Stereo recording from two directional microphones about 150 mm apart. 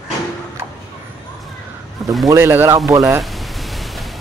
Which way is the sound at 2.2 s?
15° right (ahead or behind).